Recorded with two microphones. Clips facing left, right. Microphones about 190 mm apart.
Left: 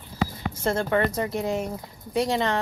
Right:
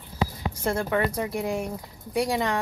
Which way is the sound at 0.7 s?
5° right (ahead or behind).